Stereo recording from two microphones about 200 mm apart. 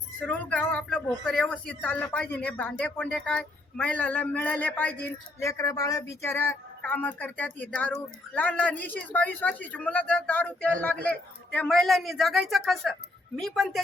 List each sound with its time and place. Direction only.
0.3 s speech: 5° left (ahead or behind)